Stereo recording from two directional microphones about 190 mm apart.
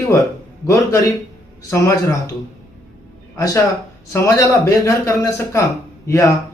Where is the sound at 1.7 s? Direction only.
15° left (ahead or behind).